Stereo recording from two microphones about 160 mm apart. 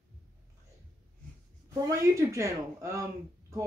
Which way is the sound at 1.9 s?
20° right (ahead or behind).